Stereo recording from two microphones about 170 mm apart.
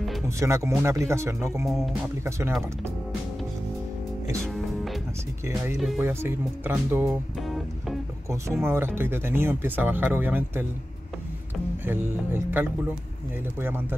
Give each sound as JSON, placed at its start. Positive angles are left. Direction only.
{"t": 0.4, "sound": "speech", "side_deg": -15}
{"t": 1.7, "sound": "speech", "side_deg": 0}
{"t": 2.2, "sound": "speech", "side_deg": -15}
{"t": 5.9, "sound": "speech", "side_deg": -10}
{"t": 7.4, "sound": "music", "side_deg": 0}
{"t": 8.3, "sound": "speech", "side_deg": -15}
{"t": 11.8, "sound": "speech", "side_deg": -10}